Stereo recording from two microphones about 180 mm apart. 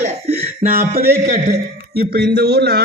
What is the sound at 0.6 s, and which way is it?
A man's voice, 55° right (ahead or behind).